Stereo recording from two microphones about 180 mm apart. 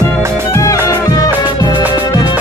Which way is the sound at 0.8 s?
15° left (ahead or behind).